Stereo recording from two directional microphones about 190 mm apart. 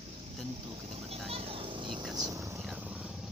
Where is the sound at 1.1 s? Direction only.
30° right (ahead or behind).